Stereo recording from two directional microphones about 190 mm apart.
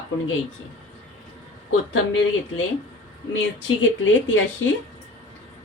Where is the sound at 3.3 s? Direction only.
90° left.